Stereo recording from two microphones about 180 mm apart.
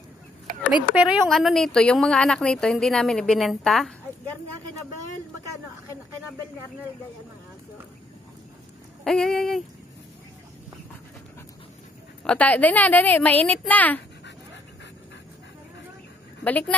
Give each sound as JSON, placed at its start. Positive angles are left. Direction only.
{"t": 0.5, "sound": "a sound", "side_deg": -50}
{"t": 0.9, "sound": "a woman's voice", "side_deg": -5}
{"t": 9.0, "sound": "a woman's voice", "side_deg": 0}
{"t": 12.3, "sound": "a woman's voice", "side_deg": 10}
{"t": 16.4, "sound": "a woman's voice", "side_deg": 10}